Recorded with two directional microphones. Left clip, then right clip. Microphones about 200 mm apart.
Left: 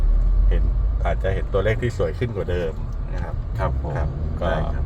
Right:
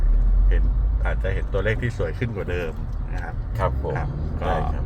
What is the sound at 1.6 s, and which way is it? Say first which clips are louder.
Speech: left 3 dB; 25° left (ahead or behind).